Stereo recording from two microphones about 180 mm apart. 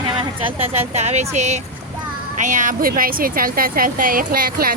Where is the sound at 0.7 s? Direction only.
35° right (ahead or behind).